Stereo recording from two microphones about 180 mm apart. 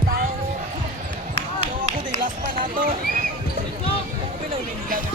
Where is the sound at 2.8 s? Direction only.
50° right (ahead or behind).